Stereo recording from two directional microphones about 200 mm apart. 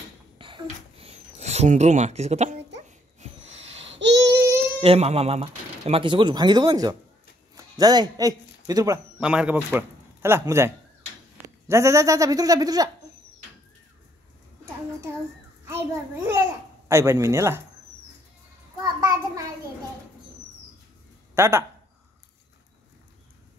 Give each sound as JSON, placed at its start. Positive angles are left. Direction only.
{"t": 0.4, "sound": "a sound", "side_deg": -25}
{"t": 3.9, "sound": "child singing", "side_deg": -60}
{"t": 4.7, "sound": "speech", "side_deg": -30}
{"t": 9.2, "sound": "speech", "side_deg": -5}
{"t": 16.3, "sound": "a child's voice", "side_deg": -15}
{"t": 18.8, "sound": "a sound", "side_deg": -15}
{"t": 21.4, "sound": "speech", "side_deg": -15}